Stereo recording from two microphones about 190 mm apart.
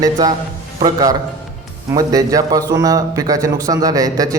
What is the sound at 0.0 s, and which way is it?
Speech, 20° right (ahead or behind).